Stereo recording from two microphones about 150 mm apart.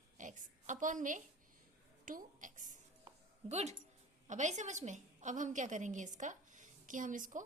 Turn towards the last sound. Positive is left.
turn(degrees=-60)  # may be behind; listen again after turning